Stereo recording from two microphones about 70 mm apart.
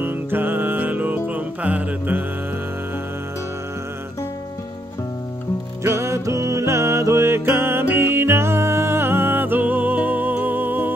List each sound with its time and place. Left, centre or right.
0.0 s music: right
5.9 s music: right